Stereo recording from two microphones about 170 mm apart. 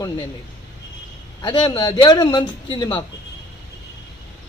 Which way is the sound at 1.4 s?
30° left (ahead or behind).